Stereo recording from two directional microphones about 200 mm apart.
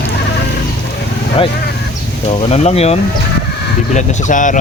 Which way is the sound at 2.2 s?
30° left (ahead or behind).